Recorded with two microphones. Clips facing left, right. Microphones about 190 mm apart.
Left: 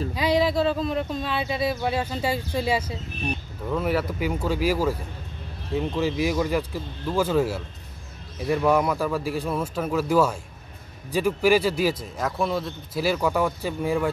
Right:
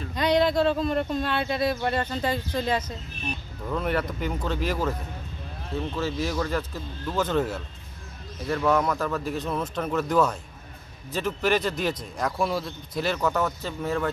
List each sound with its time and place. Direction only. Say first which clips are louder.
0.1 s a man's voice: right 1 dB; 5° left (ahead or behind)